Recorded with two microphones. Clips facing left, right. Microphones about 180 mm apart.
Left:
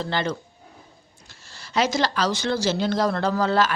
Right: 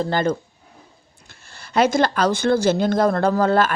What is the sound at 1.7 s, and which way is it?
Speech, 55° right (ahead or behind).